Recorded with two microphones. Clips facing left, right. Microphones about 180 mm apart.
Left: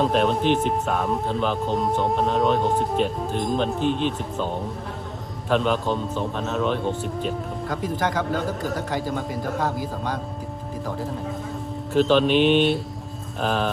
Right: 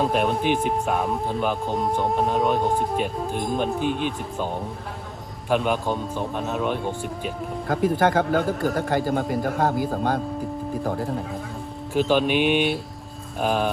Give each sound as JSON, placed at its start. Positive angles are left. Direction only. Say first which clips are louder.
{"t": 0.0, "sound": "speech", "louder": "left 1 dB", "side_deg": -5}
{"t": 5.5, "sound": "speech", "louder": "left 1 dB", "side_deg": -10}
{"t": 7.9, "sound": "a man's voice", "louder": "right 3 dB", "side_deg": -55}
{"t": 11.9, "sound": "speech", "louder": "left 2 dB", "side_deg": -10}